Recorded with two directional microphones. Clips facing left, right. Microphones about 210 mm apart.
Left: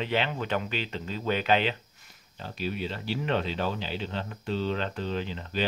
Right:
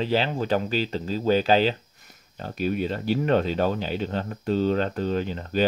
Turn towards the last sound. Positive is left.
turn(degrees=-45)  # may be behind; listen again after turning